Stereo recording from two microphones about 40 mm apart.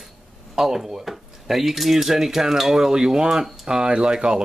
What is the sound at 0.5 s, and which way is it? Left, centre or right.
Speech, centre.